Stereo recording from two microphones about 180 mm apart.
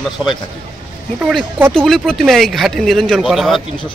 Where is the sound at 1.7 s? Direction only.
5° left (ahead or behind).